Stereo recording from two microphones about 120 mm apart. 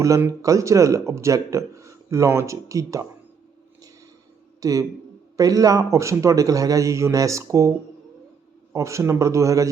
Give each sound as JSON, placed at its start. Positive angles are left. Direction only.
{"t": 0.4, "sound": "speech", "side_deg": -25}
{"t": 4.6, "sound": "speech", "side_deg": -30}
{"t": 8.7, "sound": "speech", "side_deg": -25}